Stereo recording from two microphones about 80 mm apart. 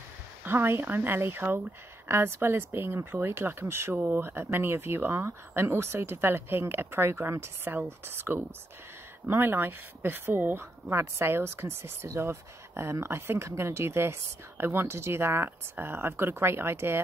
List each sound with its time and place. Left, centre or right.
0.4 s a woman's voice: right